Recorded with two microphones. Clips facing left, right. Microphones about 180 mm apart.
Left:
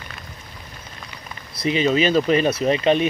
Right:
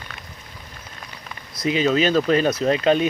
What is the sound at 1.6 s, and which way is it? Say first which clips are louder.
Speech: even; centre (ahead or behind).